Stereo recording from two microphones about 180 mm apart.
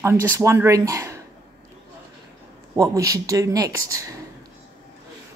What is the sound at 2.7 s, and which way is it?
Speech, 20° right (ahead or behind).